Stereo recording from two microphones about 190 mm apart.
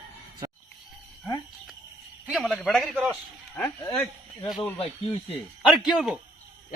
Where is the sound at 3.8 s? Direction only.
20° left (ahead or behind).